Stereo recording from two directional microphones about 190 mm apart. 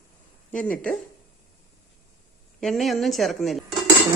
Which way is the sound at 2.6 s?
Centre (ahead or behind).